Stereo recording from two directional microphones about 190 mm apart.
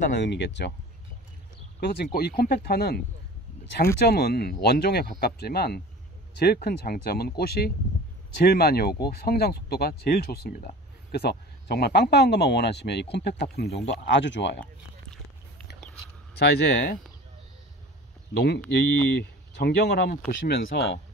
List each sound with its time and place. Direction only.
0.2 s speech: 65° left (ahead or behind)
1.8 s speech: 55° left (ahead or behind)
14.0 s speech: 70° left (ahead or behind)
16.3 s speech: 60° left (ahead or behind)
18.3 s speech: 60° left (ahead or behind)